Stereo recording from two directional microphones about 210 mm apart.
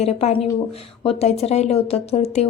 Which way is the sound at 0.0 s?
30° left (ahead or behind).